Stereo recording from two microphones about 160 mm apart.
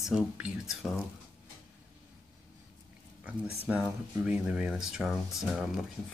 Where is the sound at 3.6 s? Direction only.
5° right (ahead or behind).